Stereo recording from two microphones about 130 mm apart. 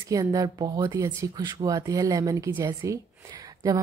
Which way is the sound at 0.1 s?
30° right (ahead or behind).